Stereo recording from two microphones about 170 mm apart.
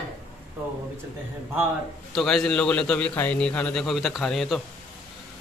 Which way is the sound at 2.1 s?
Centre (ahead or behind).